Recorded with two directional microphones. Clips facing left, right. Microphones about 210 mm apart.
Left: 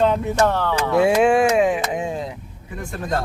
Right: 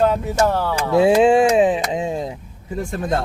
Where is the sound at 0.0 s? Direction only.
5° right (ahead or behind).